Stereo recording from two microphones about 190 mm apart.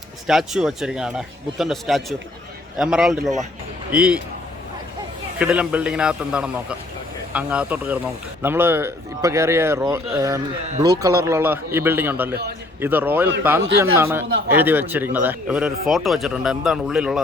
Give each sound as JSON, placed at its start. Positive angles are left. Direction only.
{"t": 0.3, "sound": "speech", "side_deg": 0}
{"t": 5.4, "sound": "speech", "side_deg": -5}
{"t": 12.3, "sound": "a man's voice", "side_deg": -60}
{"t": 12.8, "sound": "speech", "side_deg": -10}